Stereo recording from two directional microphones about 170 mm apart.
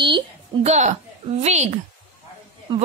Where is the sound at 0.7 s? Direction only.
45° right (ahead or behind).